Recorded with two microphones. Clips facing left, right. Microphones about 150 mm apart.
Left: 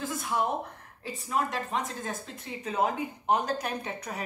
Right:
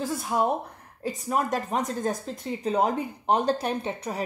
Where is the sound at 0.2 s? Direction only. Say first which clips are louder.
Right 3 dB; 35° right (ahead or behind).